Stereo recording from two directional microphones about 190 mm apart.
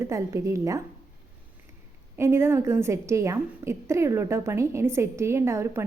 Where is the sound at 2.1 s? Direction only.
15° right (ahead or behind).